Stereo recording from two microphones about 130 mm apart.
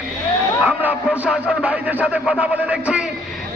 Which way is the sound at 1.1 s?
5° right (ahead or behind).